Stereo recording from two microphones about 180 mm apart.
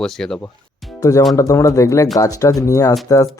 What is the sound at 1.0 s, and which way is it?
Speech, 20° left (ahead or behind).